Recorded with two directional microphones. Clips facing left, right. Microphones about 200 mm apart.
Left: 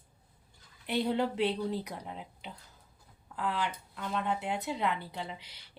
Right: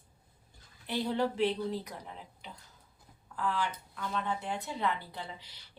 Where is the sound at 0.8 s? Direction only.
20° left (ahead or behind).